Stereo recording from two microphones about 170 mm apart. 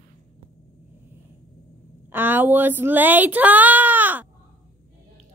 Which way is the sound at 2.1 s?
10° right (ahead or behind).